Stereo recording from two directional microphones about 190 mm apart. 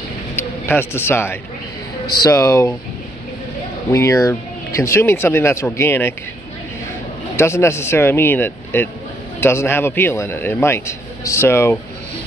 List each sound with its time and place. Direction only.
0.4 s a man's voice: 10° left (ahead or behind)
3.9 s a man's voice: 15° left (ahead or behind)
7.3 s a man's voice: 15° left (ahead or behind)